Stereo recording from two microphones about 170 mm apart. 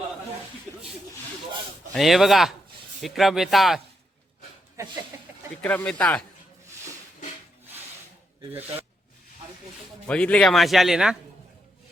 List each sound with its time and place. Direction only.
1.9 s a man's voice: centre (ahead or behind)
4.8 s speech: 20° right (ahead or behind)
5.6 s speech: 10° left (ahead or behind)
10.1 s a man's voice: 5° left (ahead or behind)